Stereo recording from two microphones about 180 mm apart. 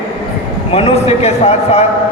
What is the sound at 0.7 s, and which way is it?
A woman's voice, 35° left (ahead or behind).